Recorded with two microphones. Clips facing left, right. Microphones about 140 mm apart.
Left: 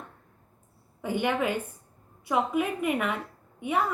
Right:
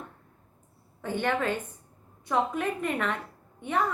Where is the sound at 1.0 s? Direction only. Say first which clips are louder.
Left 1 dB; 10° left (ahead or behind).